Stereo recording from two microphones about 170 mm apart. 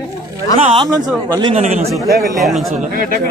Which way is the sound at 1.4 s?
35° right (ahead or behind).